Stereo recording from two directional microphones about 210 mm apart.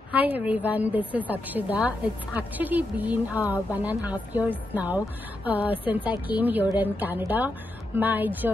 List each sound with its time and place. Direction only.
0.1 s a woman's voice: 5° right (ahead or behind)